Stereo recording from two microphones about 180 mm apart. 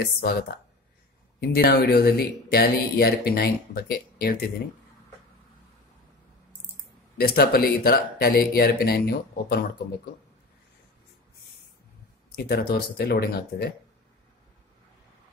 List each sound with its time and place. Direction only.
0.0 s speech: 60° left (ahead or behind)
7.2 s speech: 60° left (ahead or behind)
12.4 s speech: 60° left (ahead or behind)